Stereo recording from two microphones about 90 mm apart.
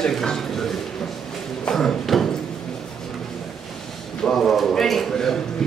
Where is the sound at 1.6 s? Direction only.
5° left (ahead or behind).